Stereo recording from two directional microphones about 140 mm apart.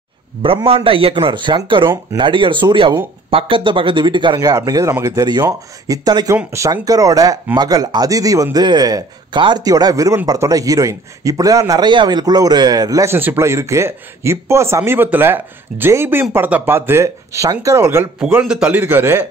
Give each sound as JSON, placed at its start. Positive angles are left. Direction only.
{"t": 0.4, "sound": "a man's voice", "side_deg": -40}
{"t": 18.2, "sound": "speech", "side_deg": -5}